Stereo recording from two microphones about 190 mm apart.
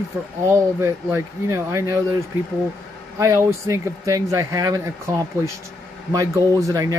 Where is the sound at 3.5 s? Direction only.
15° right (ahead or behind).